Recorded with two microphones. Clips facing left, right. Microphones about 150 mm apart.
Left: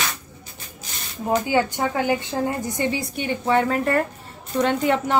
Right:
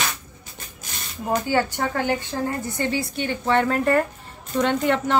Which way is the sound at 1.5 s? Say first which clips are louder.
Left 1 dB; 15° left (ahead or behind).